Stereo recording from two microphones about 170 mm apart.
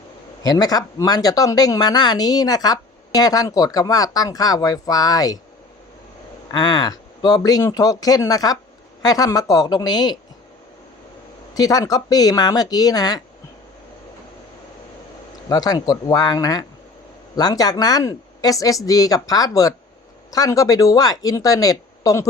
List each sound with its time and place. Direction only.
0.4 s speech: 20° left (ahead or behind)
6.5 s speech: 25° left (ahead or behind)
11.5 s speech: 20° left (ahead or behind)
15.4 s speech: 25° left (ahead or behind)